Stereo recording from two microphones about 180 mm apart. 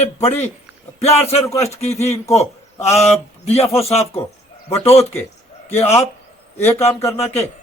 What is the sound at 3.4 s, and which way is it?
Speech, 35° left (ahead or behind).